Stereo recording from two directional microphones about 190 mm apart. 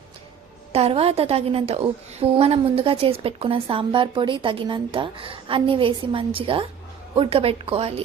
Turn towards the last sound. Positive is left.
turn(degrees=-30)  # may be behind; listen again after turning